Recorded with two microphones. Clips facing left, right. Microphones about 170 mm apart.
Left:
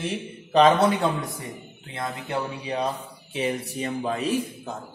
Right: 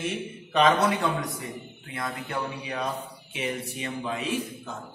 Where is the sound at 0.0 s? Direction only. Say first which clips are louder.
Left 1 dB; 30° left (ahead or behind).